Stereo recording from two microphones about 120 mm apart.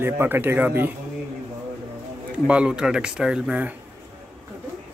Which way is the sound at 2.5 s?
10° right (ahead or behind).